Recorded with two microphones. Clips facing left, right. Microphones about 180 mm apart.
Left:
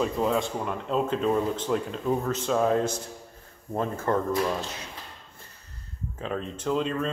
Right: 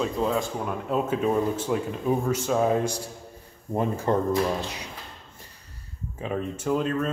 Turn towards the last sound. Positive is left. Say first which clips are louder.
# right 2 dB
turn(degrees=-5)  # may be behind; listen again after turning